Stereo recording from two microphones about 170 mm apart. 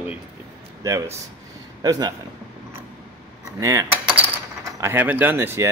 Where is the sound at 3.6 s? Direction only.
20° right (ahead or behind).